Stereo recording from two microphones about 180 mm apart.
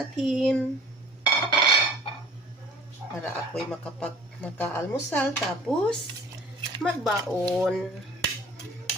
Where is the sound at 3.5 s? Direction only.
5° left (ahead or behind).